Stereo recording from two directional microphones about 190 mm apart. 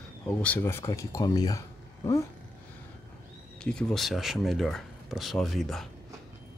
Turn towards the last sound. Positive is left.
turn(degrees=0)  # may be behind; listen again after turning